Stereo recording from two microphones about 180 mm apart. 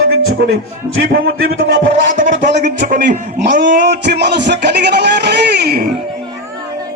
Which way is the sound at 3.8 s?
70° right (ahead or behind).